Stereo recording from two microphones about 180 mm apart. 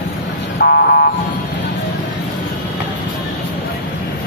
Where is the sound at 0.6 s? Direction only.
55° left (ahead or behind).